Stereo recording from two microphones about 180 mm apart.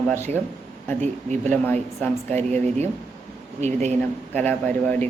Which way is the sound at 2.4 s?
40° right (ahead or behind).